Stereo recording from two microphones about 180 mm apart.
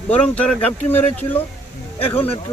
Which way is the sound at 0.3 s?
10° left (ahead or behind).